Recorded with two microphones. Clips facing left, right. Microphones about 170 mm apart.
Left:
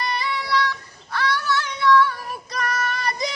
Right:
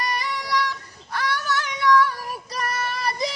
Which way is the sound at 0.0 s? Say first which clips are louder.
Left 1 dB; 45° right (ahead or behind).